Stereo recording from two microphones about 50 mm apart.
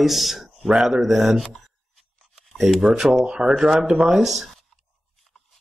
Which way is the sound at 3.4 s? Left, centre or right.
Centre.